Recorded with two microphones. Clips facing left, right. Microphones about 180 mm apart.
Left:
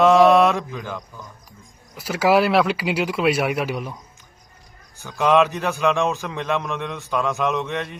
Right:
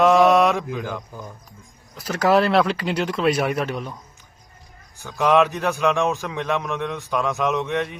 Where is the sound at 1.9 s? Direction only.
10° left (ahead or behind).